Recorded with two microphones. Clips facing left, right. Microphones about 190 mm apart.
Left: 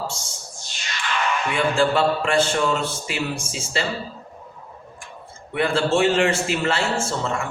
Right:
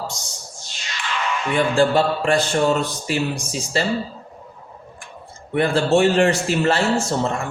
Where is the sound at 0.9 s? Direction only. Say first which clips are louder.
Left 1 dB; 55° left (ahead or behind).